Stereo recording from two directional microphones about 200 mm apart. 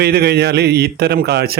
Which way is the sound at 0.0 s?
55° right (ahead or behind).